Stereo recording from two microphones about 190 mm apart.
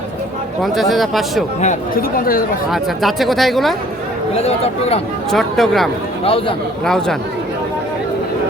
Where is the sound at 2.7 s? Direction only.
Centre (ahead or behind).